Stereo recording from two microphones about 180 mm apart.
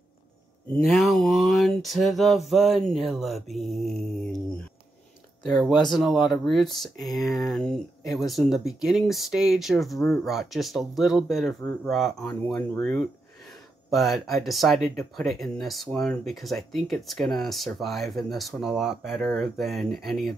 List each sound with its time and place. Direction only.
0.8 s speech: centre (ahead or behind)